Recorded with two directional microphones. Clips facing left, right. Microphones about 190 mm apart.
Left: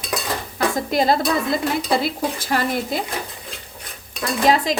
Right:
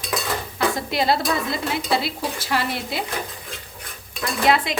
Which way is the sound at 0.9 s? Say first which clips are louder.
Left 5 dB; 45° left (ahead or behind).